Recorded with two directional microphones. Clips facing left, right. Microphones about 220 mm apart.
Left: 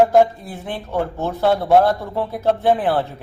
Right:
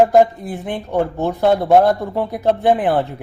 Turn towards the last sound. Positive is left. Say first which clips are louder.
# right 2 dB
turn(degrees=-15)  # may be behind; listen again after turning